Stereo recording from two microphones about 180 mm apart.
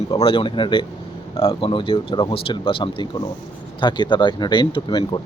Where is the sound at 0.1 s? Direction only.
30° left (ahead or behind).